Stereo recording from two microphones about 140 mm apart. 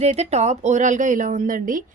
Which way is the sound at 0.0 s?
50° right (ahead or behind).